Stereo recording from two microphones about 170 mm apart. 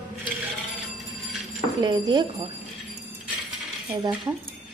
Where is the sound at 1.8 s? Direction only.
25° right (ahead or behind).